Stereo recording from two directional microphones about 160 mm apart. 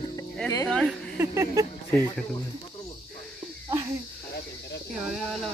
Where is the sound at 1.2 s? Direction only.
15° right (ahead or behind).